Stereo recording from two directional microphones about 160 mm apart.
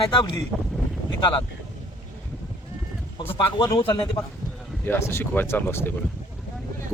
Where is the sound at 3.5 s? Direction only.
25° left (ahead or behind).